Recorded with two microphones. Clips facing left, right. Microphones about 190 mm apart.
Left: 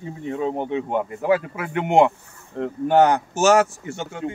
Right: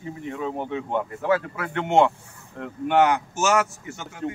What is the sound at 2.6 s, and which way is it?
Speech, 35° left (ahead or behind).